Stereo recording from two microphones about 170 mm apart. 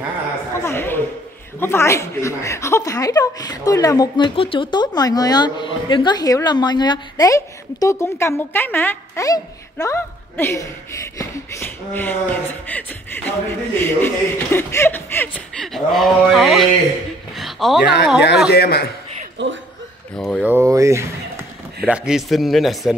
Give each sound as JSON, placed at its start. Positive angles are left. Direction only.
{"t": 0.6, "sound": "a sound", "side_deg": 15}
{"t": 1.6, "sound": "a woman's voice", "side_deg": 15}
{"t": 15.6, "sound": "speech", "side_deg": 0}
{"t": 17.4, "sound": "a sound", "side_deg": 0}
{"t": 18.5, "sound": "a man's voice", "side_deg": 70}
{"t": 19.3, "sound": "speech", "side_deg": -90}
{"t": 20.2, "sound": "speech", "side_deg": 5}
{"t": 20.4, "sound": "speech", "side_deg": -15}
{"t": 21.8, "sound": "speech", "side_deg": -5}